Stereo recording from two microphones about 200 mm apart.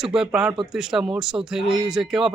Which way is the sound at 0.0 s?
5° right (ahead or behind).